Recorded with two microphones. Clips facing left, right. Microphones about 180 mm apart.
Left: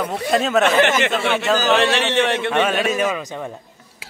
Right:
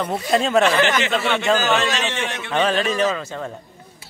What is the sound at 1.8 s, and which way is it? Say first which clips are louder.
Speech: left 6 dB; 65° left (ahead or behind).